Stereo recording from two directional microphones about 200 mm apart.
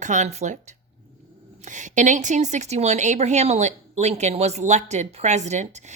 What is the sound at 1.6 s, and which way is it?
A woman's voice, 40° right (ahead or behind).